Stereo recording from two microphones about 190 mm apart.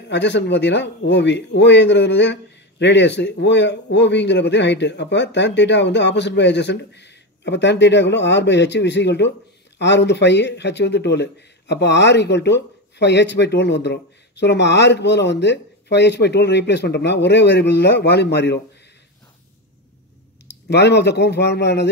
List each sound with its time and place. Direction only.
0.1 s a man's voice: 65° left (ahead or behind)
20.4 s speech: 65° left (ahead or behind)